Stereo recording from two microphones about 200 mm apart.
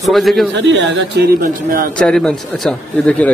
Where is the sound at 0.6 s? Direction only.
65° right (ahead or behind).